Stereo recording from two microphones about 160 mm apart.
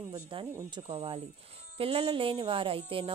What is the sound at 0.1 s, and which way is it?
Speech, 30° right (ahead or behind).